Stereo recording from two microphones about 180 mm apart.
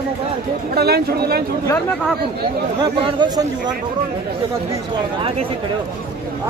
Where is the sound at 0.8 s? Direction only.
60° right (ahead or behind).